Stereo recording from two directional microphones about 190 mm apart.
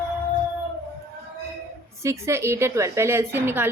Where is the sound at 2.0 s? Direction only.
15° right (ahead or behind).